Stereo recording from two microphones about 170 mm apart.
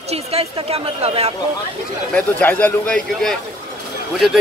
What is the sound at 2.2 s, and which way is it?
A man's voice, 10° left (ahead or behind).